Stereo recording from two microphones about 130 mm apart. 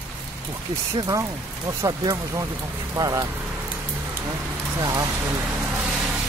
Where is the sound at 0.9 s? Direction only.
30° right (ahead or behind).